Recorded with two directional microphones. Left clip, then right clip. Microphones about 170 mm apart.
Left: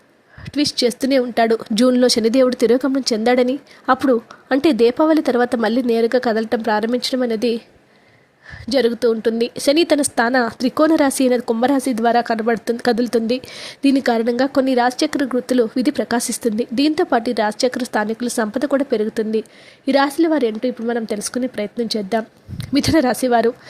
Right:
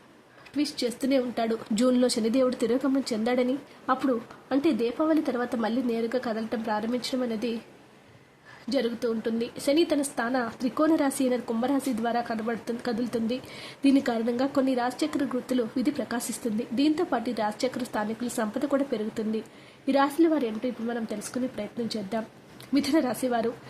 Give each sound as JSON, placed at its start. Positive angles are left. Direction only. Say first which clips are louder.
{"t": 0.4, "sound": "a woman's voice", "louder": "left 11 dB", "side_deg": 40}
{"t": 8.7, "sound": "a woman's voice", "louder": "left 12 dB", "side_deg": 45}